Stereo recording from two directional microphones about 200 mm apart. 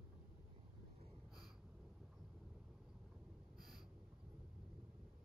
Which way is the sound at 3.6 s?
Centre (ahead or behind).